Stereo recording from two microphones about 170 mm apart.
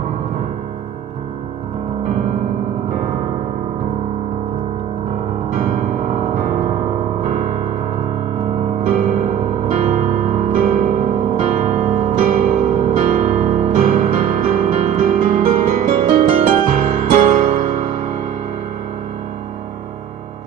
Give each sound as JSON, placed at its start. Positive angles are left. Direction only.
{"t": 5.6, "sound": "music", "side_deg": -50}
{"t": 9.7, "sound": "music", "side_deg": -40}